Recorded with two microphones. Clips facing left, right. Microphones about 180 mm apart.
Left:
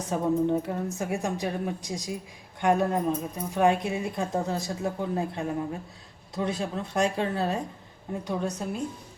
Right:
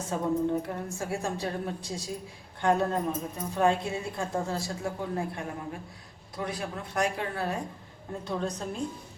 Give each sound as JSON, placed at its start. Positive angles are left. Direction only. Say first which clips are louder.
{"t": 0.1, "sound": "a woman's voice", "louder": "left 3 dB", "side_deg": 20}
{"t": 8.2, "sound": "a woman's voice", "louder": "left 1 dB", "side_deg": 15}